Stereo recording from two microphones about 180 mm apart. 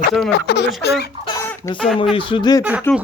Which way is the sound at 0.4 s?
70° left (ahead or behind).